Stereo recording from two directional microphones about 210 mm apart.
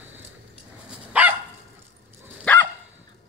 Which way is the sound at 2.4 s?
5° left (ahead or behind).